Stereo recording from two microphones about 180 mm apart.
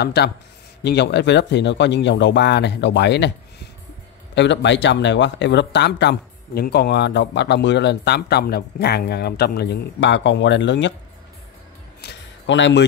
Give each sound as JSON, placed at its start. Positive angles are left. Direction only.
{"t": 0.0, "sound": "speech", "side_deg": 65}
{"t": 4.4, "sound": "speech", "side_deg": 80}
{"t": 12.0, "sound": "a sound", "side_deg": 75}